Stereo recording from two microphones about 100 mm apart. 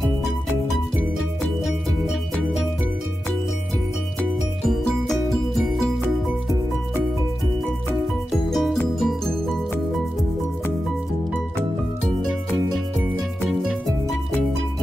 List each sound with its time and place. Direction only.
4.6 s music: centre (ahead or behind)
8.3 s music: centre (ahead or behind)
13.5 s music: centre (ahead or behind)